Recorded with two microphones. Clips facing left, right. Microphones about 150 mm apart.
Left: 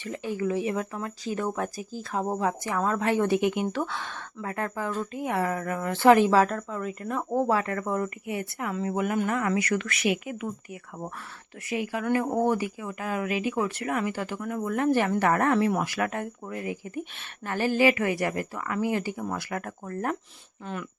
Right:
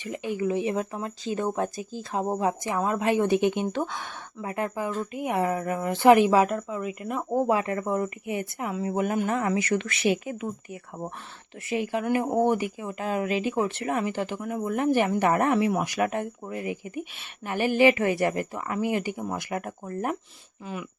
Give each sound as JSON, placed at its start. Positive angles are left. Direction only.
{"t": 0.0, "sound": "speech", "side_deg": -15}
{"t": 11.7, "sound": "speech", "side_deg": -25}